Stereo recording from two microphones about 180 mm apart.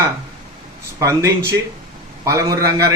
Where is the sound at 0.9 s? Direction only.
15° right (ahead or behind).